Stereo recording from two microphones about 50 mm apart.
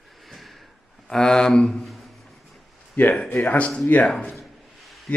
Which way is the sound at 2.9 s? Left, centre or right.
Left.